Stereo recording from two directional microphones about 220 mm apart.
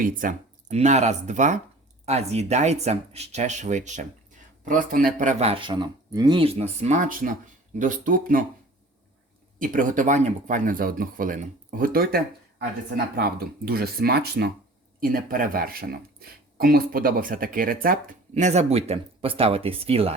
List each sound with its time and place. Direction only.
0.0 s speech: 40° right (ahead or behind)
9.6 s speech: 35° right (ahead or behind)